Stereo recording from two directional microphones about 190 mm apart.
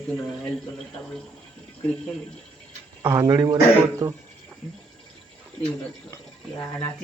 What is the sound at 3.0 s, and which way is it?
Speech, 15° right (ahead or behind).